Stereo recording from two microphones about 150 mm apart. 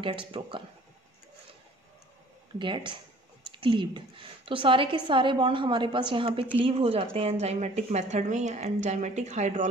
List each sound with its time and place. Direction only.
0.0 s a woman's voice: 35° right (ahead or behind)
2.6 s a woman's voice: 30° right (ahead or behind); by 9.7 s 50° right (ahead or behind)